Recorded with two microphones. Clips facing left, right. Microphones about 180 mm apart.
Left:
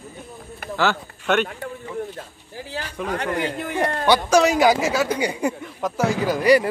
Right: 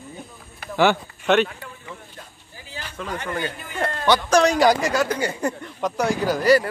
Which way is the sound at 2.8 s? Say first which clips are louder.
Left 1 dB; 15° left (ahead or behind).